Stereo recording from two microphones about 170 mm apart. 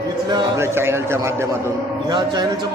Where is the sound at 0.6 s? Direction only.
15° right (ahead or behind).